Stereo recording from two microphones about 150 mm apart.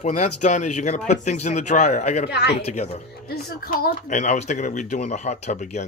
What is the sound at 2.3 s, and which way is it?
Speech, 90° left.